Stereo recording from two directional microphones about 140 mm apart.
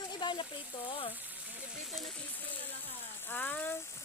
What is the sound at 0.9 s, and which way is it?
Speech, 40° left (ahead or behind).